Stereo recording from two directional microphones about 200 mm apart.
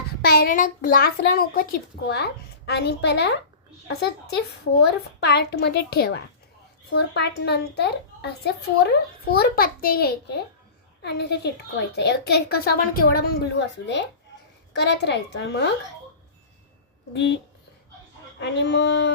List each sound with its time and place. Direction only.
0.2 s a child's voice: 50° left (ahead or behind)
18.3 s a child's voice: 60° left (ahead or behind)